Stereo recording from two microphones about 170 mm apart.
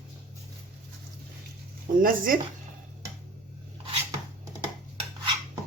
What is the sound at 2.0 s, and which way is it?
Speech, 55° right (ahead or behind).